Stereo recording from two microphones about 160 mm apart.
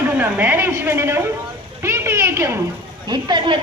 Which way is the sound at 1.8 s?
15° right (ahead or behind).